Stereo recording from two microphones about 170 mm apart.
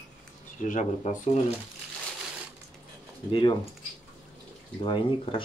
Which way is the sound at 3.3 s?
30° left (ahead or behind).